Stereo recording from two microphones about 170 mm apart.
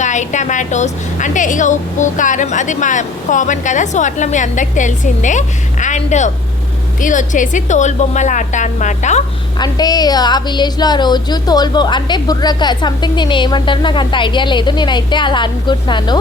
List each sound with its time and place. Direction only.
0.0 s a woman's voice: 45° left (ahead or behind)
9.6 s a woman's voice: 25° left (ahead or behind)